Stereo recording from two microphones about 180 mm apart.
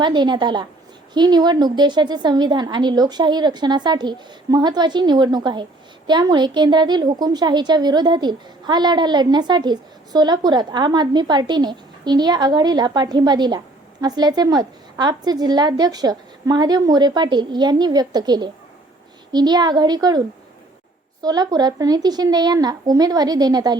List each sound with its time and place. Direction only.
0.0 s a woman's voice: 25° right (ahead or behind)